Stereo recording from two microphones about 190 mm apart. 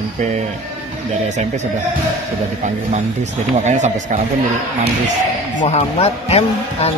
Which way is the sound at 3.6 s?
40° right (ahead or behind).